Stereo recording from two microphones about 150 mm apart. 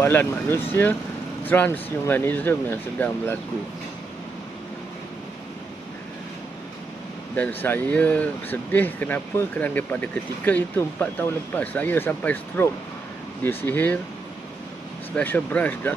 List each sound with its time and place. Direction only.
0.0 s speech: 15° left (ahead or behind)
7.3 s speech: 10° left (ahead or behind)
15.1 s speech: 10° left (ahead or behind)